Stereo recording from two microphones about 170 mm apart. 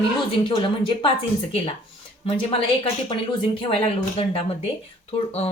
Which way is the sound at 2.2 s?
35° left (ahead or behind).